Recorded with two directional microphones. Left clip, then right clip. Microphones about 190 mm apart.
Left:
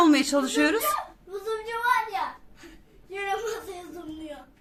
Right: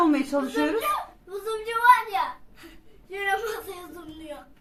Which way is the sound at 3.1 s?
10° right (ahead or behind).